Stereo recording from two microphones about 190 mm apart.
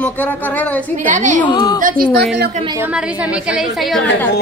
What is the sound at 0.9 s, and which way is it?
Speech, 40° right (ahead or behind).